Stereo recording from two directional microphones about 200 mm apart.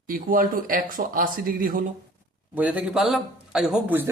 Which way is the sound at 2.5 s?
10° right (ahead or behind).